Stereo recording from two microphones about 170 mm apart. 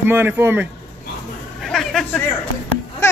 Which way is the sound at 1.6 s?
Centre (ahead or behind).